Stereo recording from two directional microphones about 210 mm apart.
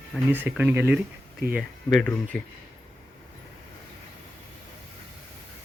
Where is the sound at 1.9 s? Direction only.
5° left (ahead or behind).